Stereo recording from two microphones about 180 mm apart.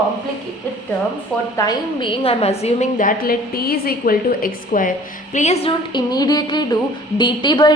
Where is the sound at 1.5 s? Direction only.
25° left (ahead or behind); by 5.7 s 40° left (ahead or behind).